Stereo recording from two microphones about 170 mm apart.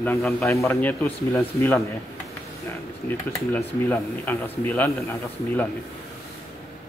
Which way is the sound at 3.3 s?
10° left (ahead or behind).